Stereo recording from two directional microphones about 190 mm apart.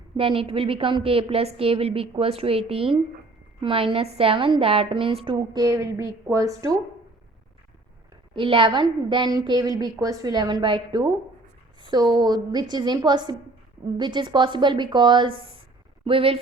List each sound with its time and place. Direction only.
0.2 s a woman's voice: 30° right (ahead or behind)
8.3 s a woman's voice: 25° right (ahead or behind)